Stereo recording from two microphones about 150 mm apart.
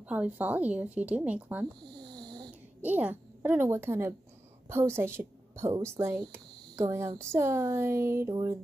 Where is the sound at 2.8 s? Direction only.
10° right (ahead or behind).